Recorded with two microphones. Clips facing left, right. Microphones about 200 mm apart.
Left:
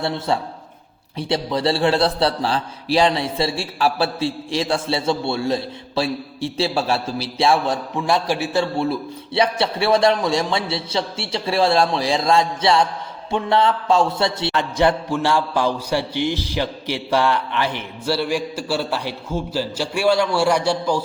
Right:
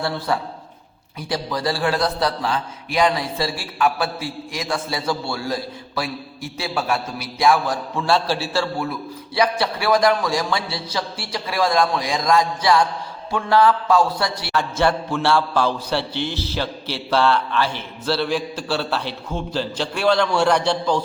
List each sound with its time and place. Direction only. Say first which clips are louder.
0.0 s a man's voice: left 1 dB; 25° left (ahead or behind)